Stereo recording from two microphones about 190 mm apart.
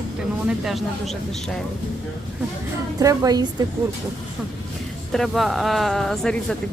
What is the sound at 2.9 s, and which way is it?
Speech, 20° right (ahead or behind).